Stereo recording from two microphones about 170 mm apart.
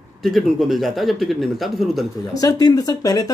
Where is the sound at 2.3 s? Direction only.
20° left (ahead or behind).